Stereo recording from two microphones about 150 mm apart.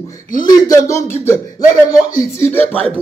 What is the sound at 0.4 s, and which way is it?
Speech, 25° left (ahead or behind).